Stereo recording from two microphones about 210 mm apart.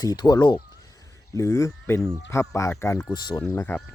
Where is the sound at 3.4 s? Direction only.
10° left (ahead or behind).